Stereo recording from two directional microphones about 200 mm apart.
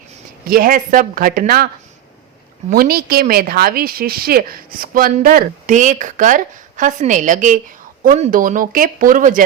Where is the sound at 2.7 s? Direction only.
50° right (ahead or behind).